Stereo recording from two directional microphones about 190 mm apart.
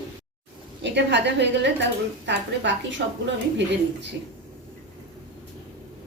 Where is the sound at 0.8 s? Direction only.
65° right (ahead or behind).